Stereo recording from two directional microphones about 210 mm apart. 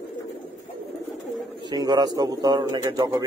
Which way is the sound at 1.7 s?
20° right (ahead or behind).